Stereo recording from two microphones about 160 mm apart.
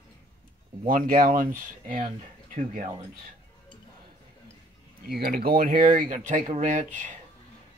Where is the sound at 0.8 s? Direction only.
60° right (ahead or behind).